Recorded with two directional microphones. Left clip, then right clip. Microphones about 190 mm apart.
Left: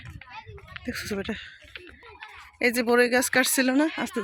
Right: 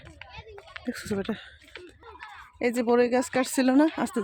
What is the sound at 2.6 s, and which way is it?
Speech, 10° right (ahead or behind).